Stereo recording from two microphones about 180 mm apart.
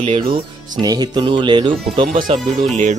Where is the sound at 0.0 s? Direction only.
35° right (ahead or behind).